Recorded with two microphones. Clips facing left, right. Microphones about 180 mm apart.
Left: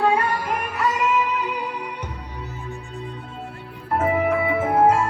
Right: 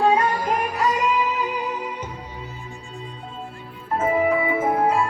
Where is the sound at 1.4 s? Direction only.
60° left (ahead or behind).